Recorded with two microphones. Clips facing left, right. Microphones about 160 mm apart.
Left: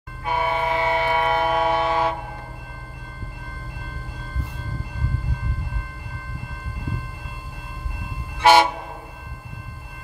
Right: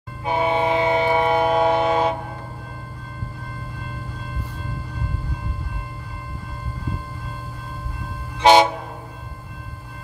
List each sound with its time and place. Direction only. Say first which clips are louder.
0.2 s train: right 3 dB; 20° right (ahead or behind)
8.4 s train: right 2 dB; 20° right (ahead or behind)